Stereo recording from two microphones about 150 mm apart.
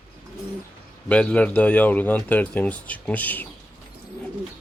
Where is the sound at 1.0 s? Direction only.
10° left (ahead or behind).